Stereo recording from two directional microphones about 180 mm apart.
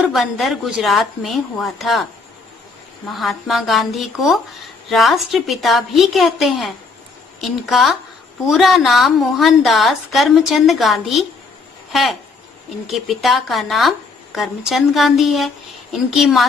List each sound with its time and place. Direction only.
0.0 s speech: centre (ahead or behind)
3.1 s speech: centre (ahead or behind)